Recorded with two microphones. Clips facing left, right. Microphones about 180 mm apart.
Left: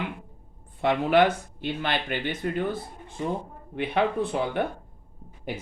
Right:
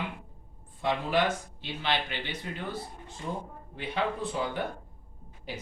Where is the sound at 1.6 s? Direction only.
50° left (ahead or behind).